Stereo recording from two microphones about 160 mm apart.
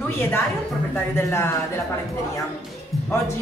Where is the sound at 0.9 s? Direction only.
15° left (ahead or behind).